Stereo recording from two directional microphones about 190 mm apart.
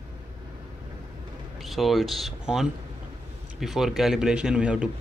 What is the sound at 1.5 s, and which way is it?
Speech, centre (ahead or behind).